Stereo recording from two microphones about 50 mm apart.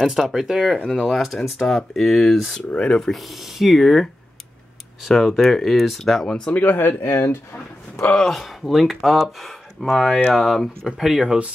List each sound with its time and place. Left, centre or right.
0.0 s speech: centre
2.7 s speech: left
3.1 s speech: centre
6.2 s speech: centre
6.5 s speech: left
8.2 s speech: centre
11.0 s speech: centre